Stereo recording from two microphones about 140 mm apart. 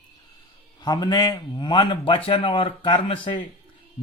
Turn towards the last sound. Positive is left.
turn(degrees=35)  # may be behind; listen again after turning